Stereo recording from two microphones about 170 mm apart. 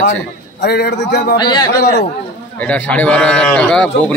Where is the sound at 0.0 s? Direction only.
90° left.